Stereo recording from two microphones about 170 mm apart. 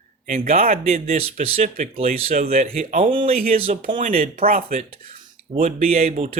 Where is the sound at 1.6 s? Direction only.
50° right (ahead or behind).